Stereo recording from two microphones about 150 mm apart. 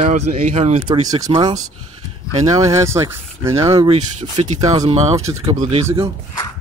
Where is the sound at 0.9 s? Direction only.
25° right (ahead or behind).